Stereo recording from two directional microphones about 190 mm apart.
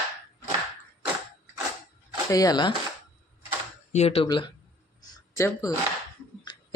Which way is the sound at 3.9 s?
35° left (ahead or behind).